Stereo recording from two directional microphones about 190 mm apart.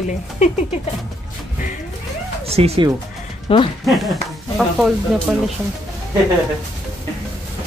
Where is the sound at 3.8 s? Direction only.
Centre (ahead or behind).